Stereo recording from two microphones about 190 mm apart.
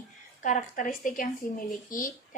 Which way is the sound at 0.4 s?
40° left (ahead or behind).